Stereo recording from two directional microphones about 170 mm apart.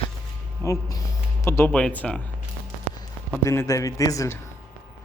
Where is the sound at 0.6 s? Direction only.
20° left (ahead or behind).